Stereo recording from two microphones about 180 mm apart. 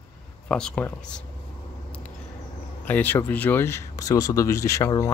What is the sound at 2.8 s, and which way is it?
Speech, 10° left (ahead or behind).